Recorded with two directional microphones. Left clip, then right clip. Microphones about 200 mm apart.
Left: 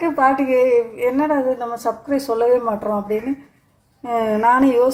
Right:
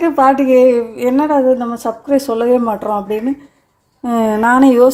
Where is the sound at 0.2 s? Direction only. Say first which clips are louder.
Right 6 dB; 45° right (ahead or behind).